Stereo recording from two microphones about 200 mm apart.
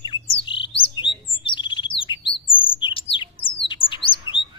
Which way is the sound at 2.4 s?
25° left (ahead or behind).